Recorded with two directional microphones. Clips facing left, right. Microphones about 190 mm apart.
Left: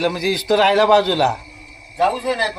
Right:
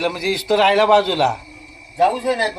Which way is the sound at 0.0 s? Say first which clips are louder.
Left 1 dB; 5° right (ahead or behind).